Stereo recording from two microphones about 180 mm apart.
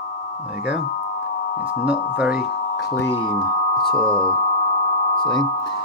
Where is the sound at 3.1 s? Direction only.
30° left (ahead or behind).